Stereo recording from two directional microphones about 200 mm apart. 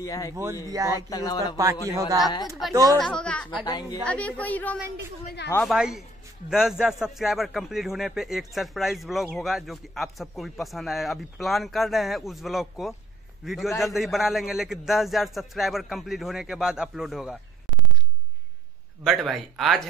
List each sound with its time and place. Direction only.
0.0 s a woman's voice: 15° left (ahead or behind)
0.7 s a man's voice: 15° right (ahead or behind)
1.1 s speech: 20° left (ahead or behind)
1.9 s a man's voice: 15° right (ahead or behind)
2.2 s speech: 20° left (ahead or behind)
2.7 s a man's voice: 20° right (ahead or behind)
3.0 s a man's voice: 5° left (ahead or behind)
3.6 s speech: 20° left (ahead or behind)
4.0 s a woman's voice: 5° left (ahead or behind)
19.0 s a man's voice: centre (ahead or behind)